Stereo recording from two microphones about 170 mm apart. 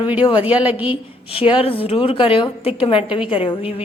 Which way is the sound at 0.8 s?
30° left (ahead or behind).